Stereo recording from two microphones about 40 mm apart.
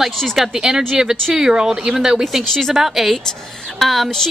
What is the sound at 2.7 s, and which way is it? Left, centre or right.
Speech, centre.